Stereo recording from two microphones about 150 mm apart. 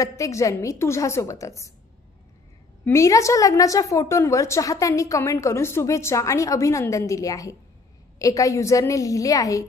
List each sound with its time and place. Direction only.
0.0 s a woman's voice: 20° left (ahead or behind)
2.8 s a woman's voice: 20° left (ahead or behind)